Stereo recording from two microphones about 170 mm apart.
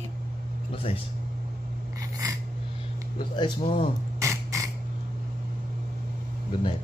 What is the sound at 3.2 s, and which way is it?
Speech, 25° left (ahead or behind).